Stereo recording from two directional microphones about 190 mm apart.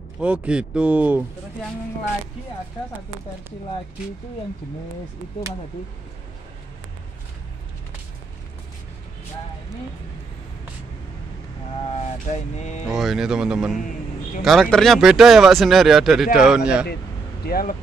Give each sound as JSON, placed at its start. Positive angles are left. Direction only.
{"t": 0.2, "sound": "speech", "side_deg": -5}
{"t": 11.9, "sound": "speech", "side_deg": 40}
{"t": 12.9, "sound": "speech", "side_deg": 0}
{"t": 17.5, "sound": "speech", "side_deg": 55}